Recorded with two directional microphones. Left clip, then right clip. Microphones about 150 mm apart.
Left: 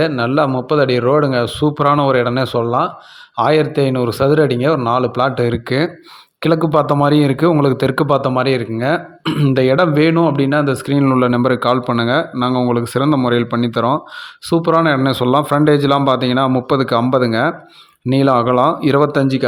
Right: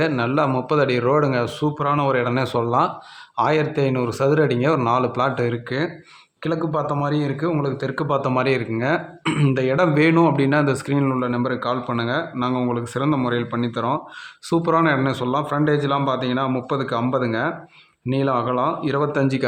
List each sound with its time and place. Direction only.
0.0 s speech: 25° left (ahead or behind)
1.8 s a man's voice: 40° left (ahead or behind)
8.3 s speech: 25° left (ahead or behind)
9.5 s speech: 35° left (ahead or behind)
10.9 s a man's voice: 40° left (ahead or behind)